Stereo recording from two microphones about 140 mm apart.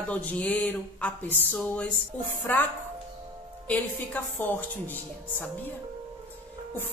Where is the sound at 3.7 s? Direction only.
10° left (ahead or behind).